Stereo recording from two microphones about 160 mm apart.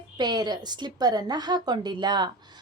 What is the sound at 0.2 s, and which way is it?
Speech, 25° right (ahead or behind).